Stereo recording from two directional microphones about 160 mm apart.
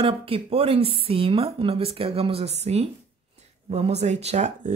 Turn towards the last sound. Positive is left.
turn(degrees=-45)  # may be behind; listen again after turning